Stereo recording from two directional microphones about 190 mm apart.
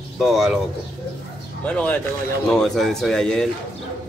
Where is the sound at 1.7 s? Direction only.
5° left (ahead or behind).